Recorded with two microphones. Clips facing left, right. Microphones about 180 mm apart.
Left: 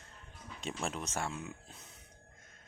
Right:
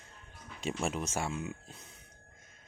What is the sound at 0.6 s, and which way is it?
Speech, 5° right (ahead or behind).